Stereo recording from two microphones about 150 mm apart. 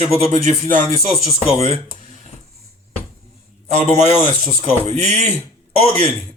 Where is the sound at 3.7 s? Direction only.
45° right (ahead or behind).